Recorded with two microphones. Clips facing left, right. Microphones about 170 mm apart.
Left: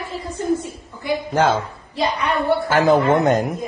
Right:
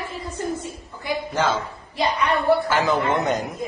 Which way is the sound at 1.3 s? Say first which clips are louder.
Left 5 dB; 55° left (ahead or behind).